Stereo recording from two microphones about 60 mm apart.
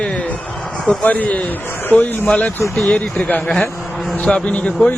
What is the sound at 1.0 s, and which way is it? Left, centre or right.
A man's voice, left.